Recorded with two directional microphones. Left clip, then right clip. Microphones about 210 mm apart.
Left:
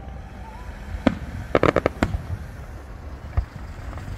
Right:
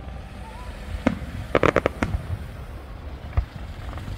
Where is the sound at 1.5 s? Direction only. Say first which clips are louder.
Left 1 dB; 15° right (ahead or behind).